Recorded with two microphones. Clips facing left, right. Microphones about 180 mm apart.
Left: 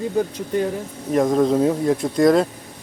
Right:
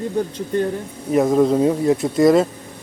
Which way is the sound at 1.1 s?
5° right (ahead or behind).